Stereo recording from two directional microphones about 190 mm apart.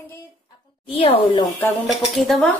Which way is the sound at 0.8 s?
25° left (ahead or behind).